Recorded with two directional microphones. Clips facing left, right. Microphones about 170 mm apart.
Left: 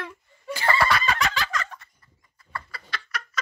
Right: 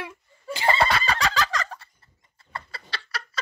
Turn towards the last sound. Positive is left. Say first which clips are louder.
# left 1 dB
turn(degrees=-30)  # may be behind; listen again after turning